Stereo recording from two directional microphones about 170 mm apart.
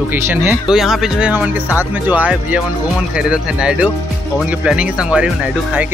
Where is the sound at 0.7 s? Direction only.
Centre (ahead or behind).